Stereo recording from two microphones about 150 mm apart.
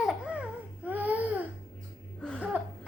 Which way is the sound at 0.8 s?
10° right (ahead or behind).